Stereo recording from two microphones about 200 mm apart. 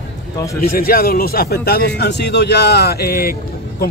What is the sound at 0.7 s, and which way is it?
Speech, 50° left (ahead or behind).